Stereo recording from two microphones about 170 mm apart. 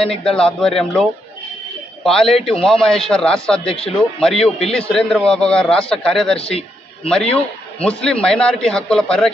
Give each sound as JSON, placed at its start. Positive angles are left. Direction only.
{"t": 0.2, "sound": "a man's voice", "side_deg": 5}
{"t": 2.0, "sound": "a man's voice", "side_deg": 0}
{"t": 3.6, "sound": "a man's voice", "side_deg": 35}
{"t": 4.2, "sound": "a man's voice", "side_deg": 0}
{"t": 6.3, "sound": "a man's voice", "side_deg": 35}
{"t": 7.1, "sound": "a man's voice", "side_deg": 5}